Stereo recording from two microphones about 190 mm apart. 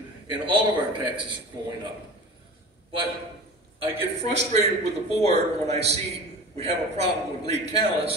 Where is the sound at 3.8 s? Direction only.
35° right (ahead or behind).